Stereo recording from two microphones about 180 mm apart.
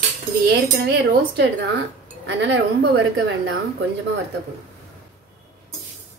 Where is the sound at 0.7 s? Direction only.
65° right (ahead or behind).